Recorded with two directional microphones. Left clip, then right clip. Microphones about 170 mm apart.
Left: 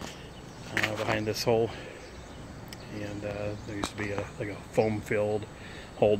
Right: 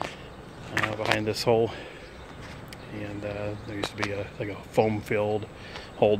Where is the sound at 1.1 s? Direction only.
15° right (ahead or behind).